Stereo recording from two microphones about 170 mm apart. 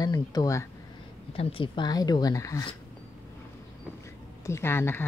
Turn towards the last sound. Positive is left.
turn(degrees=15)  # may be behind; listen again after turning